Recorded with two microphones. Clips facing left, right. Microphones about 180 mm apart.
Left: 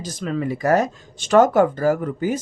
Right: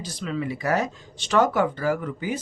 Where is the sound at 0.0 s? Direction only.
45° left (ahead or behind).